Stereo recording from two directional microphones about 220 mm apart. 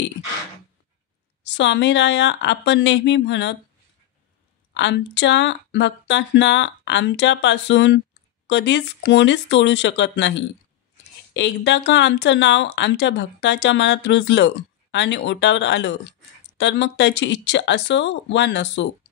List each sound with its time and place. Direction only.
1.5 s speech: 55° left (ahead or behind)
4.7 s speech: 55° left (ahead or behind)